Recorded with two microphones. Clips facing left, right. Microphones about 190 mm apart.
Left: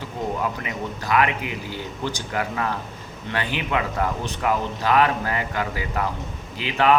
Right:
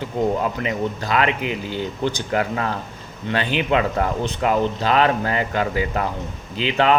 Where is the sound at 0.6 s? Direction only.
25° right (ahead or behind).